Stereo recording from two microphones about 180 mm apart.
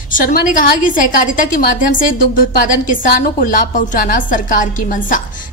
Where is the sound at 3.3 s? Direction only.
50° left (ahead or behind).